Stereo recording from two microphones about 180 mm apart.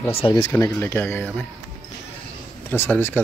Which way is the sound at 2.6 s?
10° left (ahead or behind).